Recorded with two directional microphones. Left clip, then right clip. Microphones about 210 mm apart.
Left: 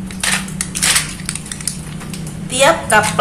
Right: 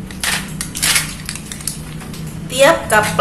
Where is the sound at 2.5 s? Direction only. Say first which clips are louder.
Right 1 dB; 5° left (ahead or behind).